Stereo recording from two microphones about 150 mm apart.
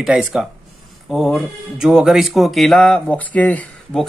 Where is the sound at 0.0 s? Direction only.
5° right (ahead or behind).